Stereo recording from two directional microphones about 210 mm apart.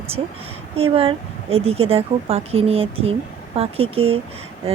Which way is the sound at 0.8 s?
25° right (ahead or behind).